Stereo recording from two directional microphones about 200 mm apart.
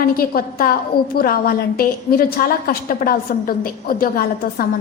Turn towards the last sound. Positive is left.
turn(degrees=45)  # may be behind; listen again after turning